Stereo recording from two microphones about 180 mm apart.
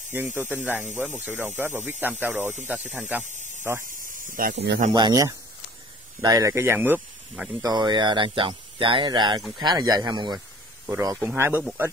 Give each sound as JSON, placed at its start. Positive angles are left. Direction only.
{"t": 0.1, "sound": "speech", "side_deg": -10}
{"t": 3.3, "sound": "a sound", "side_deg": -45}
{"t": 4.9, "sound": "speech", "side_deg": -20}
{"t": 7.6, "sound": "speech", "side_deg": -25}